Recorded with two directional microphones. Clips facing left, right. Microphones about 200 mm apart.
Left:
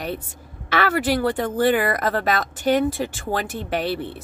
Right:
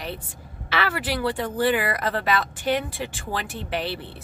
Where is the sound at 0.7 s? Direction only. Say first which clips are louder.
Left 6 dB; 45° left (ahead or behind).